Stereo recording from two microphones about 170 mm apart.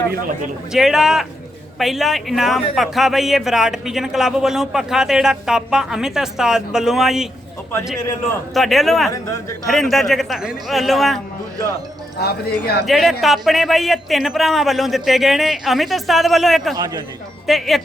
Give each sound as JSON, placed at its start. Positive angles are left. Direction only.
{"t": 0.7, "sound": "a man's voice", "side_deg": 0}
{"t": 8.5, "sound": "a man's voice", "side_deg": 0}
{"t": 12.2, "sound": "speech", "side_deg": 70}
{"t": 12.8, "sound": "a man's voice", "side_deg": 0}
{"t": 16.7, "sound": "speech", "side_deg": -20}
{"t": 17.4, "sound": "speech", "side_deg": 0}